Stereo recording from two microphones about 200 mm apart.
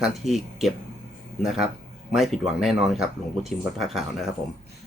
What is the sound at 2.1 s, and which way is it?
Speech, centre (ahead or behind).